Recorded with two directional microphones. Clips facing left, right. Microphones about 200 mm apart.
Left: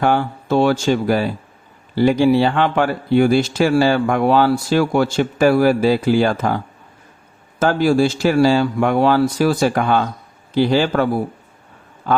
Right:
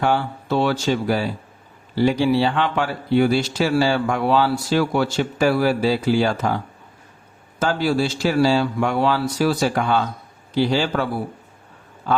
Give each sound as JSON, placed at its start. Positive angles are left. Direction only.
{"t": 0.0, "sound": "speech", "side_deg": 50}
{"t": 7.6, "sound": "speech", "side_deg": 50}